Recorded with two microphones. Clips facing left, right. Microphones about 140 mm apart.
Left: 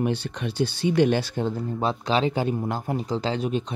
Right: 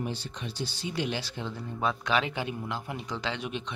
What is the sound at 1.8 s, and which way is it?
Speech, 30° left (ahead or behind).